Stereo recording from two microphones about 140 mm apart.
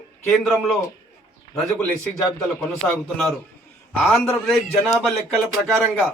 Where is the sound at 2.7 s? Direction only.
Centre (ahead or behind).